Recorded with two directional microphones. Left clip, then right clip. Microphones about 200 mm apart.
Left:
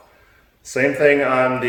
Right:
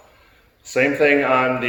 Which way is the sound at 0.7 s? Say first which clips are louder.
Left 1 dB; 15° left (ahead or behind).